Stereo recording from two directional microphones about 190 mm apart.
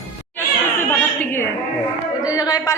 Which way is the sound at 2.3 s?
20° left (ahead or behind).